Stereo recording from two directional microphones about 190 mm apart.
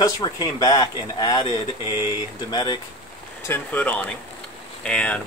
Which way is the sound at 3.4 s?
10° left (ahead or behind).